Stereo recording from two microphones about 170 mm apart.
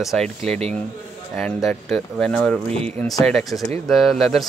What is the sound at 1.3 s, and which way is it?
Speech, 5° left (ahead or behind).